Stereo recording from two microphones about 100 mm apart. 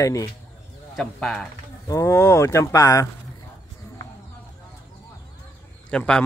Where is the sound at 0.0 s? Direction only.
35° left (ahead or behind).